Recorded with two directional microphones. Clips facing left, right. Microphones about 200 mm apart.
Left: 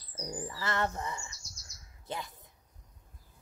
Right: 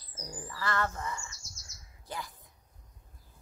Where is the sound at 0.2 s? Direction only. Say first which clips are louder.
Left 1 dB; 25° left (ahead or behind).